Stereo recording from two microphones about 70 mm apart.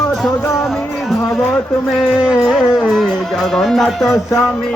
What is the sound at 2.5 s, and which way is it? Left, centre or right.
Speech, centre.